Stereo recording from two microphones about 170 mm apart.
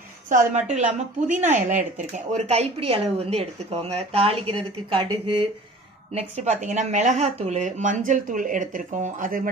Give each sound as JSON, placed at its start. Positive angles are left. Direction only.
{"t": 0.3, "sound": "speech", "side_deg": -50}